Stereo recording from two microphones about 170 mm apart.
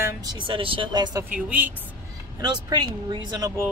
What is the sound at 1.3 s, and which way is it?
Speech, 10° right (ahead or behind).